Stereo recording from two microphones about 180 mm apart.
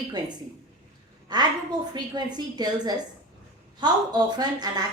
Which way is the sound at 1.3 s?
25° right (ahead or behind).